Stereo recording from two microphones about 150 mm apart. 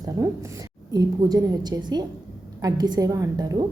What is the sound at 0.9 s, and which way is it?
Speech, 25° right (ahead or behind).